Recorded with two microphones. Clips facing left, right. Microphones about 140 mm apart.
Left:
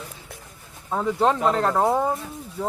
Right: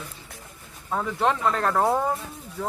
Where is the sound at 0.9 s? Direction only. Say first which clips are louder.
Left 3 dB; 15° left (ahead or behind).